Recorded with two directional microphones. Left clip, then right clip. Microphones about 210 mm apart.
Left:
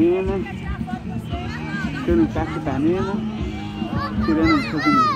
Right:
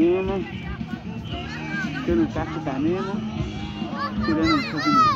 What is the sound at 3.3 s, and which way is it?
Music, 35° right (ahead or behind).